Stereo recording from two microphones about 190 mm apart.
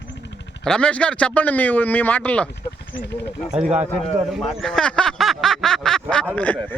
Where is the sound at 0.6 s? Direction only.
5° left (ahead or behind).